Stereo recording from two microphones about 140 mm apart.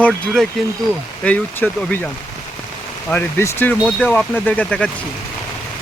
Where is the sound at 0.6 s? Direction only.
Centre (ahead or behind).